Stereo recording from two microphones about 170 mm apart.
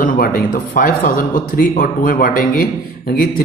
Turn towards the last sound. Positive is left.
turn(degrees=55)  # may be behind; listen again after turning